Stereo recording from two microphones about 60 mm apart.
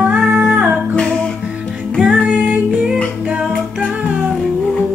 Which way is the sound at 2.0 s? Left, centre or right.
Centre.